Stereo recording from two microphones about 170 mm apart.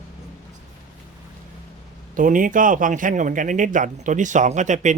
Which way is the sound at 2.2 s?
50° right (ahead or behind).